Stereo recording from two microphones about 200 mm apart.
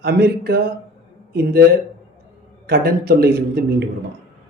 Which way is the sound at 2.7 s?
50° right (ahead or behind).